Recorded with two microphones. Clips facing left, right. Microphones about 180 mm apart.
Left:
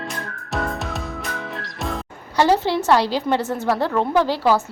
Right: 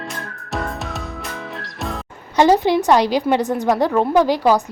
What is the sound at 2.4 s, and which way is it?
A woman's voice, 15° right (ahead or behind).